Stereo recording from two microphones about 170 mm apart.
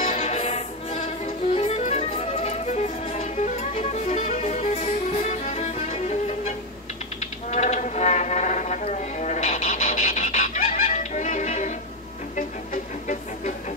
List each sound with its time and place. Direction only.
0.0 s music: 45° left (ahead or behind)
7.2 s a sound: 45° left (ahead or behind)
12.4 s music: 50° left (ahead or behind)